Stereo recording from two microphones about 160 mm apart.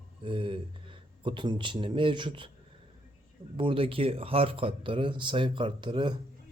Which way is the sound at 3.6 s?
35° right (ahead or behind).